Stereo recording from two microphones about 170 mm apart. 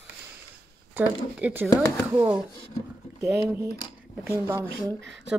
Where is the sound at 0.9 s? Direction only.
10° right (ahead or behind).